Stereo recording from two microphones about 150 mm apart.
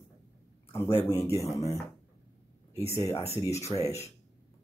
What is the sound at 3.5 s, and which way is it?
Speech, 45° left (ahead or behind).